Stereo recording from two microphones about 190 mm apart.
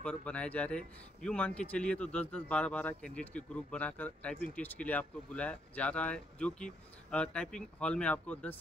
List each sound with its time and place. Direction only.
0.0 s a man's voice: 5° left (ahead or behind)